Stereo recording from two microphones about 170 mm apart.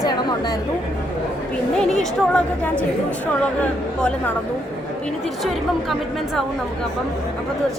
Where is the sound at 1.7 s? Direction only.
5° left (ahead or behind).